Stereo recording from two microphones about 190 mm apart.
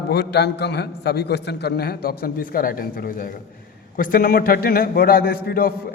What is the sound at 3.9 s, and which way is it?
A man's voice, 50° left (ahead or behind).